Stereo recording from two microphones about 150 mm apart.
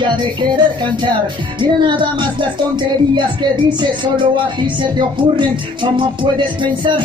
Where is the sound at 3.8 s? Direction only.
30° right (ahead or behind).